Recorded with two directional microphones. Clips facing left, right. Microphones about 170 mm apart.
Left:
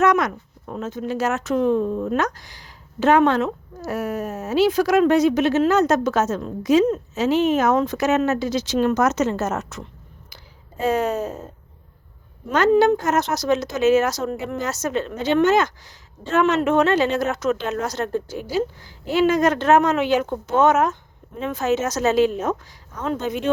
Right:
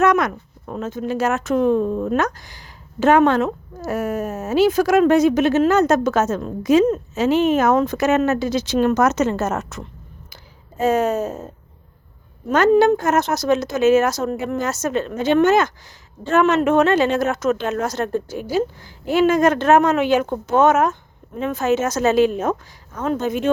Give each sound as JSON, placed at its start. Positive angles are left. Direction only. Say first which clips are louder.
{"t": 0.0, "sound": "speech", "louder": "right 1 dB", "side_deg": -55}
{"t": 12.5, "sound": "speech", "louder": "right 2 dB", "side_deg": -45}